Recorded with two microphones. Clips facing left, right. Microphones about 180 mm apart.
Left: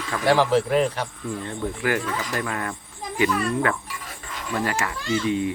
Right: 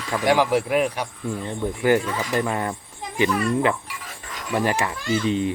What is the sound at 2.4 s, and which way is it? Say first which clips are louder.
Speech: right 4 dB; 25° right (ahead or behind).